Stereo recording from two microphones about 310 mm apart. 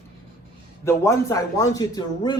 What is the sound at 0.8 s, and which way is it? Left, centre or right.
A man's voice, centre.